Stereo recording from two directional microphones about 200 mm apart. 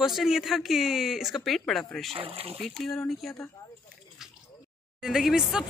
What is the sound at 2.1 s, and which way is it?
Speech, 30° right (ahead or behind).